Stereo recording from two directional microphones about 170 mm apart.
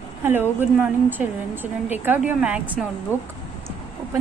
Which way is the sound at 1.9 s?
10° right (ahead or behind).